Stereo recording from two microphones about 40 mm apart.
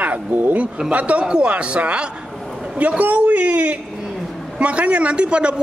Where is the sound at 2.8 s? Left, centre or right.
Right.